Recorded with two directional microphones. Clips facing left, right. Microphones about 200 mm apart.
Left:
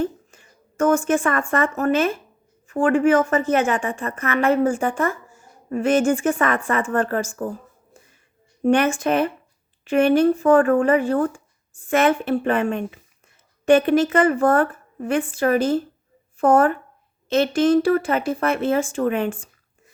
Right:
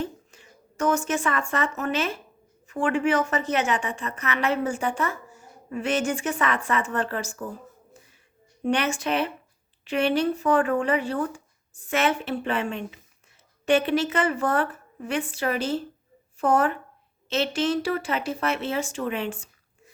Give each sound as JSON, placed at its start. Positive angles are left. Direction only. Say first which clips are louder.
{"t": 0.0, "sound": "speech", "louder": "left 7 dB", "side_deg": 50}
{"t": 8.6, "sound": "speech", "louder": "left 7 dB", "side_deg": 50}